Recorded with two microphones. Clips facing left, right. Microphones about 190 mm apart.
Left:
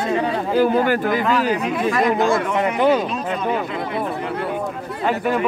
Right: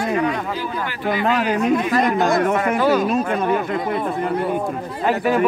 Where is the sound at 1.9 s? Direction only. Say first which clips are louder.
Even; 40° right (ahead or behind).